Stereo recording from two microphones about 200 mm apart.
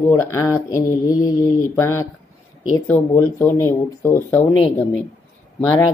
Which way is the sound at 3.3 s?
15° left (ahead or behind).